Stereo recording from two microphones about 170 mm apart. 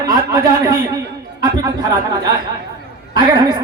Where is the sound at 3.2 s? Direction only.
25° right (ahead or behind).